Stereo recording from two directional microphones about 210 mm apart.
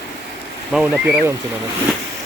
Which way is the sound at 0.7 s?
5° right (ahead or behind).